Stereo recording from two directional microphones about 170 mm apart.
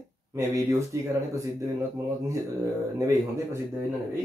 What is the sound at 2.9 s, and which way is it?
Speech, 15° right (ahead or behind).